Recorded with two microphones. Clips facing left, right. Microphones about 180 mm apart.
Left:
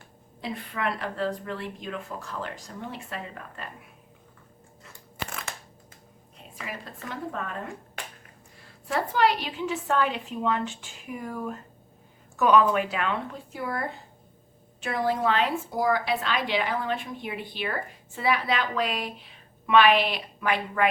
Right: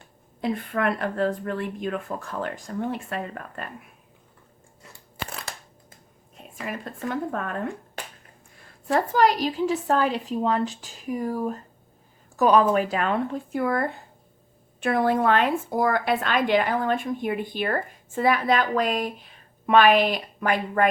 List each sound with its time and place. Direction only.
0.4 s a woman's voice: 50° right (ahead or behind)
5.1 s crunch: 35° right (ahead or behind)
6.3 s a woman's voice: 45° right (ahead or behind)
8.9 s a woman's voice: 40° right (ahead or behind)